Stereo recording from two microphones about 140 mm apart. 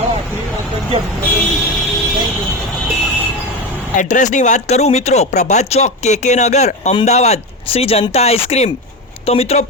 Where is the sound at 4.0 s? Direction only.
60° left (ahead or behind).